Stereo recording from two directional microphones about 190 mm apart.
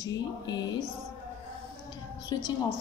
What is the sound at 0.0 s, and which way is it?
Speech, 20° left (ahead or behind).